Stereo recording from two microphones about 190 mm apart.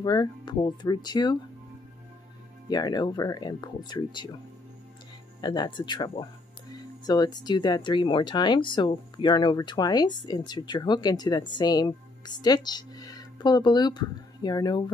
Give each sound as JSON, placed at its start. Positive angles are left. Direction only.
{"t": 0.0, "sound": "speech", "side_deg": 20}
{"t": 2.7, "sound": "speech", "side_deg": 20}
{"t": 5.4, "sound": "speech", "side_deg": 20}